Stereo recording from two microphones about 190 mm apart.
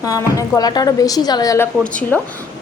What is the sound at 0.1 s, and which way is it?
A woman's voice, 15° left (ahead or behind).